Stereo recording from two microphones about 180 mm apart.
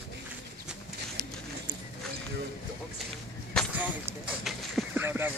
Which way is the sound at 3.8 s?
5° right (ahead or behind).